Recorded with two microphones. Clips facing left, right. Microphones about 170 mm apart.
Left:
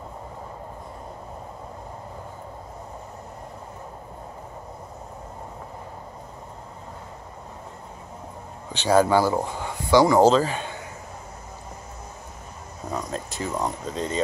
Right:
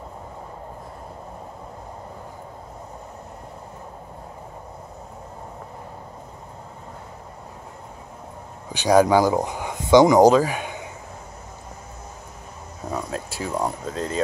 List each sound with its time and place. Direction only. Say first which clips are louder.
8.6 s speech: right 3 dB; 15° right (ahead or behind)
12.9 s speech: right 1 dB; 5° right (ahead or behind)